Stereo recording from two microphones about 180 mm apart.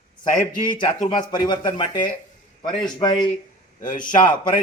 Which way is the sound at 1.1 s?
25° left (ahead or behind).